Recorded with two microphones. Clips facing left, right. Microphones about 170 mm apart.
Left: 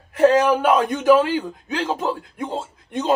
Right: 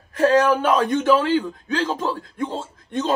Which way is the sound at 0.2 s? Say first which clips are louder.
Left 1 dB; 15° left (ahead or behind).